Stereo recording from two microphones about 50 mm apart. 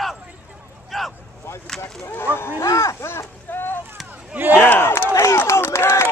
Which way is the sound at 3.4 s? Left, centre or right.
Left.